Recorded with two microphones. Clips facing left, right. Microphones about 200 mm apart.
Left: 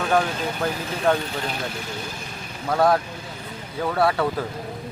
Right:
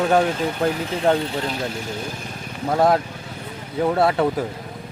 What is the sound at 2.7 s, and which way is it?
Speech, 20° right (ahead or behind).